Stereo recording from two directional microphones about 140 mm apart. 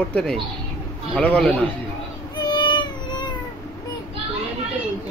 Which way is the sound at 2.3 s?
30° left (ahead or behind).